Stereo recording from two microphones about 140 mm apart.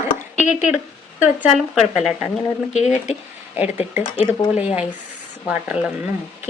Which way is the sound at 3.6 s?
10° right (ahead or behind).